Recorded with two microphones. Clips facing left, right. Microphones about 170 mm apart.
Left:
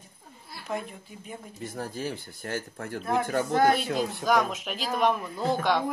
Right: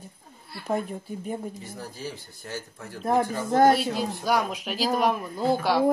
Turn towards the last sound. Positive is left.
turn(degrees=-5)  # may be behind; listen again after turning